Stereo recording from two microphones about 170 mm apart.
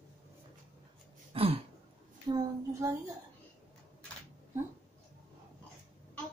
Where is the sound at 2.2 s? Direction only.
25° right (ahead or behind).